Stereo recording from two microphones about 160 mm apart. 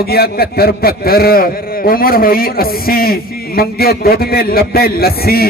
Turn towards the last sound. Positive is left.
turn(degrees=70)  # may be behind; listen again after turning